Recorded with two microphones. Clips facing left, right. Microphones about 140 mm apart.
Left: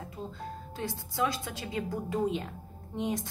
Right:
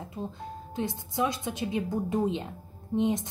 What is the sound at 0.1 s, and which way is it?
A woman's voice, 20° right (ahead or behind).